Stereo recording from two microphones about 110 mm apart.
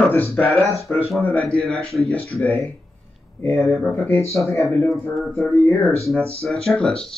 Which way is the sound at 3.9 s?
20° left (ahead or behind).